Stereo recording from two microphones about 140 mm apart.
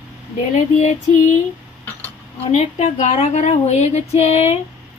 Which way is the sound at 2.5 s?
55° left (ahead or behind).